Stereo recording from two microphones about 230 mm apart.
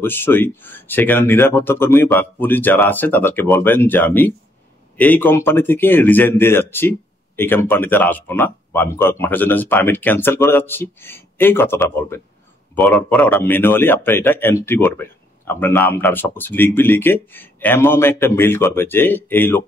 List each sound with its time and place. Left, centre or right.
0.0 s speech: centre